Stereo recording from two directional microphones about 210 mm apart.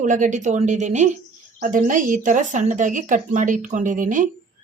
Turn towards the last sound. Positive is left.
turn(degrees=-40)  # may be behind; listen again after turning